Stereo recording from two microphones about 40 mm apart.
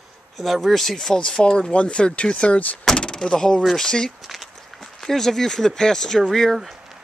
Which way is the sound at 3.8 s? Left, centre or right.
Centre.